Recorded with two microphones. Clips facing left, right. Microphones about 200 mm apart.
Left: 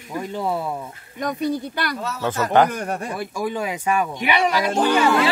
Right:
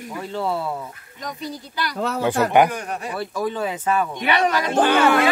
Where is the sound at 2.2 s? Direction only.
15° right (ahead or behind).